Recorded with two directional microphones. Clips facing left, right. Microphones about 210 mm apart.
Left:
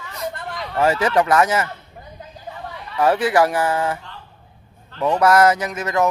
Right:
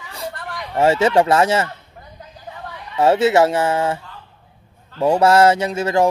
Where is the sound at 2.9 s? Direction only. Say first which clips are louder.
Right 3 dB; 25° right (ahead or behind).